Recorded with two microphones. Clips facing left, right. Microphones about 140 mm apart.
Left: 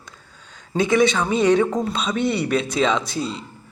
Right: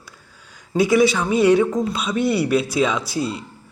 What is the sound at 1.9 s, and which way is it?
Speech, 5° right (ahead or behind).